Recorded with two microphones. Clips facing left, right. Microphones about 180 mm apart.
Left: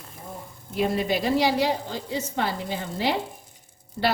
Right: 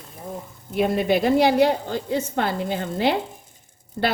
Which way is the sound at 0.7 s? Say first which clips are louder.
Right 4 dB; 55° right (ahead or behind).